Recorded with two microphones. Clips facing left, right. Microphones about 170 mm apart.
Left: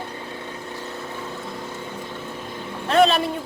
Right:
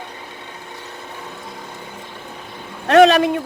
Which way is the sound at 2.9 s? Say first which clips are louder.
Right 6 dB; 85° right.